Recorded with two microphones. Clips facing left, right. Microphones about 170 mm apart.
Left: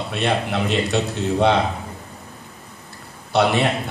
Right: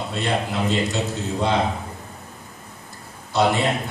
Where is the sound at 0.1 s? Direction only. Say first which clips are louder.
Left 3 dB; 65° left (ahead or behind).